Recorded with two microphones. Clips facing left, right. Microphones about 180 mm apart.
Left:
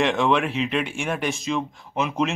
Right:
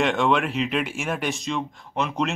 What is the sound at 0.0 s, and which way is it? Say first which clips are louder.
Speech: left 1 dB; centre (ahead or behind).